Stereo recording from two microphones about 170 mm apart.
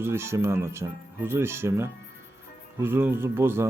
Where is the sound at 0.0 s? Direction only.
15° right (ahead or behind).